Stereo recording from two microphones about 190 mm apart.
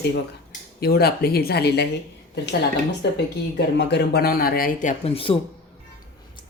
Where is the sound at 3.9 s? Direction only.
60° left (ahead or behind).